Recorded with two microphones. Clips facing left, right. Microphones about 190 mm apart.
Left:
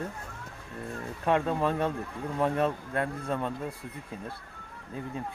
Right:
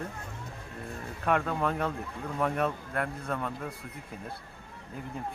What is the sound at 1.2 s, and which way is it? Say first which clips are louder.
Speech: left 2 dB; 25° left (ahead or behind).